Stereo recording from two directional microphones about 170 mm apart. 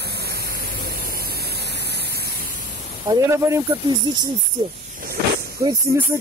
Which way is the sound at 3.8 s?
25° right (ahead or behind).